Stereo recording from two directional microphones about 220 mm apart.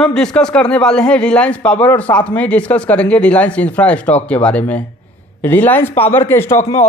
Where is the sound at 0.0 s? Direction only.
5° left (ahead or behind).